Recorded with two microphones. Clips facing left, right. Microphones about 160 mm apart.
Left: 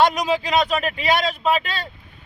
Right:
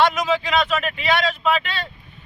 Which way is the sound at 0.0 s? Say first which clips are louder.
Left 1 dB; 35° left (ahead or behind).